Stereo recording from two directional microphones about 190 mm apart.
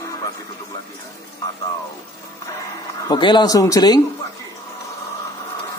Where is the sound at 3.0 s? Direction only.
25° left (ahead or behind).